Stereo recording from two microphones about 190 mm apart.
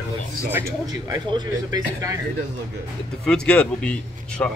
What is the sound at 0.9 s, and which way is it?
Speech, 20° right (ahead or behind).